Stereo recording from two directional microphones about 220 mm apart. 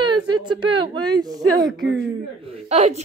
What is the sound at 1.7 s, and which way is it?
Speech, centre (ahead or behind).